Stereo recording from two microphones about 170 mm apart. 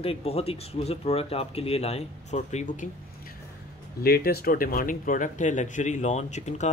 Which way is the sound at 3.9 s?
65° left (ahead or behind).